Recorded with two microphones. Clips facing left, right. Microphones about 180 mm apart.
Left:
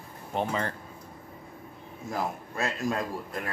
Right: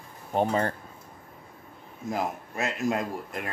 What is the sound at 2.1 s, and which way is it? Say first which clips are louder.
Speech: right 2 dB; 20° right (ahead or behind).